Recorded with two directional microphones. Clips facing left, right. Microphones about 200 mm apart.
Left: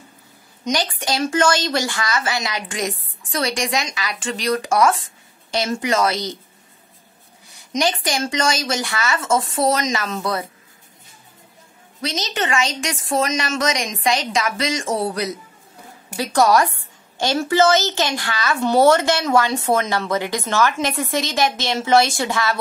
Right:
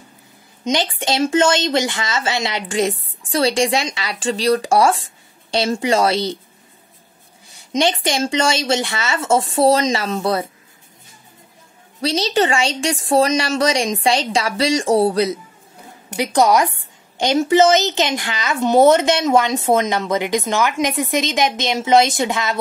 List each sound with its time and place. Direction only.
0.7 s speech: 25° right (ahead or behind)
7.7 s speech: 25° right (ahead or behind)
12.0 s a woman's voice: 30° right (ahead or behind)
16.2 s a woman's voice: 20° right (ahead or behind)